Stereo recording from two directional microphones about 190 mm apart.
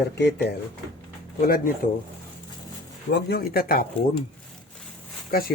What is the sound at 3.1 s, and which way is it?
Speech, 55° left (ahead or behind).